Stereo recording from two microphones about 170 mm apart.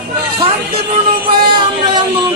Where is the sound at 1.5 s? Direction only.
30° right (ahead or behind).